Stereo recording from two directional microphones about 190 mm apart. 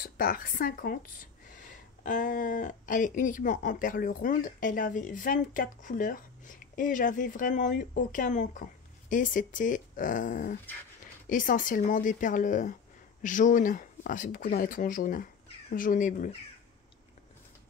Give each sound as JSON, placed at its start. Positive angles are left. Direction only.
{"t": 0.0, "sound": "speech", "side_deg": 50}